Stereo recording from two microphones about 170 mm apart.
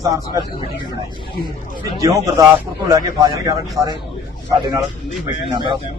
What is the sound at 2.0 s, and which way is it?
Speech, 20° right (ahead or behind).